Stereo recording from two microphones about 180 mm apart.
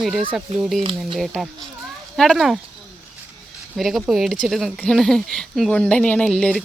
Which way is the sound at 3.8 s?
Centre (ahead or behind).